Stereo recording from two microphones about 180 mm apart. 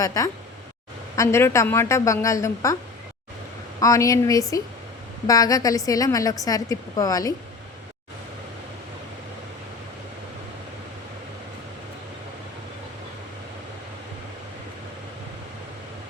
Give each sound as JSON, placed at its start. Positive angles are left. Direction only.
{"t": 0.0, "sound": "a woman's voice", "side_deg": 20}
{"t": 3.8, "sound": "a woman's voice", "side_deg": 20}